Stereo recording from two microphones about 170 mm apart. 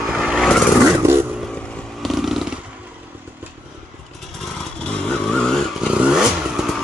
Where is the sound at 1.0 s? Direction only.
15° right (ahead or behind).